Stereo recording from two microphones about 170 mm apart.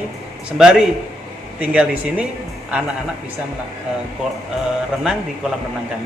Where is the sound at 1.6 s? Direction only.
5° right (ahead or behind).